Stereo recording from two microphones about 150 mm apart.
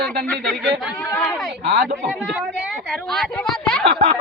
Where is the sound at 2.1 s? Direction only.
5° right (ahead or behind).